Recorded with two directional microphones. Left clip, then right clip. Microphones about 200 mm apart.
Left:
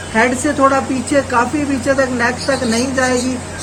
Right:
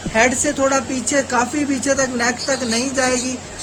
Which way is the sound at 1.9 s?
55° right (ahead or behind).